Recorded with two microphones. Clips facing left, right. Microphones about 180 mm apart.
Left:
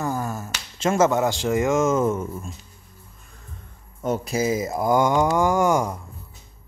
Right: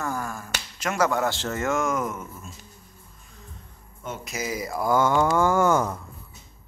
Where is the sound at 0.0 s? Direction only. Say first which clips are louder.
Left 4 dB; 20° left (ahead or behind).